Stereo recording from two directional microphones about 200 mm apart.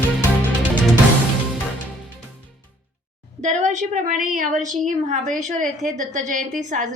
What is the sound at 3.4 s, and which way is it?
A woman's voice, 35° right (ahead or behind).